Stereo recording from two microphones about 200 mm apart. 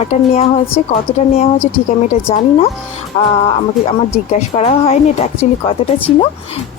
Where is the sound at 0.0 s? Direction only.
30° left (ahead or behind).